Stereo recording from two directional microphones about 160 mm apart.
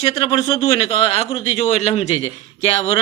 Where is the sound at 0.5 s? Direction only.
40° left (ahead or behind).